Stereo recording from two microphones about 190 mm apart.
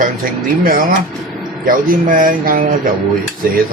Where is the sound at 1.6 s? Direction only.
45° right (ahead or behind).